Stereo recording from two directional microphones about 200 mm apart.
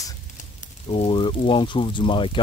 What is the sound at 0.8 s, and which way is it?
Speech, 25° left (ahead or behind).